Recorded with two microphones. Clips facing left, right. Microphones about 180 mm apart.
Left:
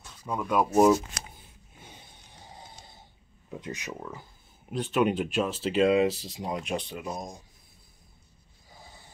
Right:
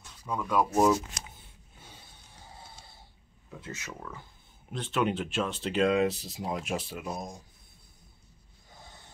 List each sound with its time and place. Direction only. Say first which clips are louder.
0.2 s speech: left 1 dB; 15° left (ahead or behind)
1.8 s a sound: left 3 dB; 15° left (ahead or behind)
3.4 s speech: left 5 dB; 15° left (ahead or behind); by 7.2 s centre (ahead or behind)